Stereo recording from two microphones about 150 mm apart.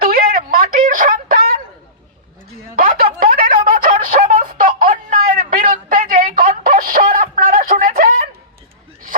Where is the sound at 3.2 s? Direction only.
65° right (ahead or behind).